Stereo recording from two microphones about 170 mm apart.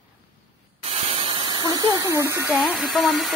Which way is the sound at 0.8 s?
35° right (ahead or behind).